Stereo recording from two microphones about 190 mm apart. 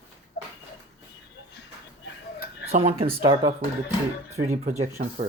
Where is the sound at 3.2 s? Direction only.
25° right (ahead or behind).